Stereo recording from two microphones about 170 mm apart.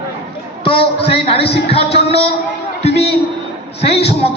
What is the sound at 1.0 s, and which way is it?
A man's voice, 35° left (ahead or behind).